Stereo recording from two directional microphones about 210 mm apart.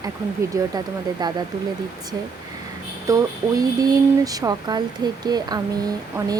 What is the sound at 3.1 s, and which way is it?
Speech, 15° right (ahead or behind).